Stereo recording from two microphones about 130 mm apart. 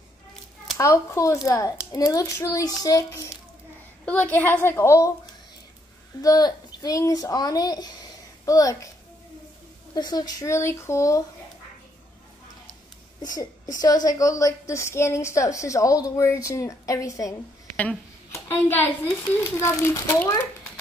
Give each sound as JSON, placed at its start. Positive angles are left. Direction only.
{"t": 0.7, "sound": "a woman's voice", "side_deg": 25}
{"t": 4.0, "sound": "a woman's voice", "side_deg": 15}
{"t": 6.2, "sound": "a woman's voice", "side_deg": 30}
{"t": 9.9, "sound": "a woman's voice", "side_deg": 30}
{"t": 13.3, "sound": "a woman's voice", "side_deg": 30}